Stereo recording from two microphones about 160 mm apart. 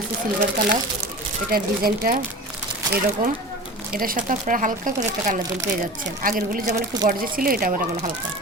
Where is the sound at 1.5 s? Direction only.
70° right (ahead or behind); by 6.8 s 45° right (ahead or behind).